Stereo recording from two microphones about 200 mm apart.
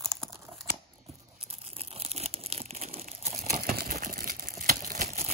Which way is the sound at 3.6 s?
45° right (ahead or behind).